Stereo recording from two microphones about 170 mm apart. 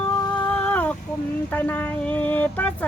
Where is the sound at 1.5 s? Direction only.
10° left (ahead or behind).